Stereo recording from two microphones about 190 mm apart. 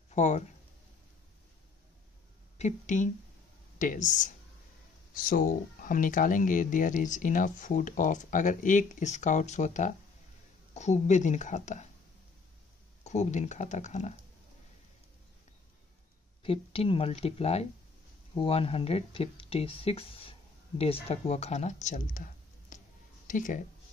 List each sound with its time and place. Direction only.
0.1 s speech: 40° left (ahead or behind)
2.5 s a woman's voice: 40° left (ahead or behind)
13.0 s a woman's voice: 35° left (ahead or behind)
16.4 s a woman's voice: 30° left (ahead or behind)